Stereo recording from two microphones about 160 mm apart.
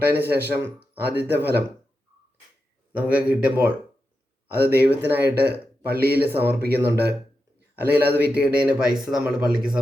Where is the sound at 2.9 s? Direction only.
10° right (ahead or behind).